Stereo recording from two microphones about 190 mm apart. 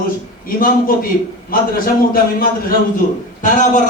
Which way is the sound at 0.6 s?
50° left (ahead or behind).